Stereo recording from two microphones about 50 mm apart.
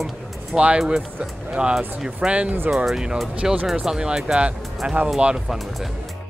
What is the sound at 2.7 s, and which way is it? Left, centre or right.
Speech, centre.